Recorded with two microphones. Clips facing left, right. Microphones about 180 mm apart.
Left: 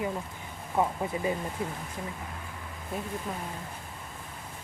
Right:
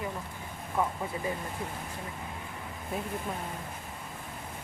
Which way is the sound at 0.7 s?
20° left (ahead or behind).